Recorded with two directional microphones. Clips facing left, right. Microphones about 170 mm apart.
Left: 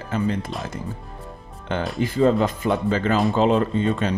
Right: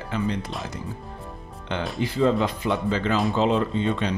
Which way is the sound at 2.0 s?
50° left (ahead or behind).